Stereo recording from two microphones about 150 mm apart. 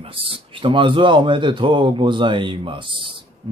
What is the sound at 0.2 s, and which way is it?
Speech, 35° right (ahead or behind).